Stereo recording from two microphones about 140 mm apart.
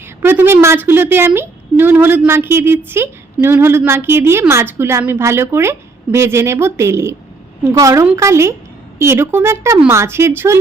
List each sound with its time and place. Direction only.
0.2 s a woman's voice: 15° right (ahead or behind)